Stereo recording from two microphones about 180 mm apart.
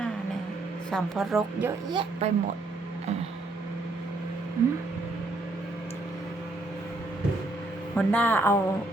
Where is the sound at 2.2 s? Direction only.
35° right (ahead or behind).